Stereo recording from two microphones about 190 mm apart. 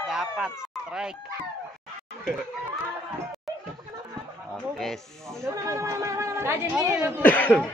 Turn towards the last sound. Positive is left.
turn(degrees=10)  # may be behind; listen again after turning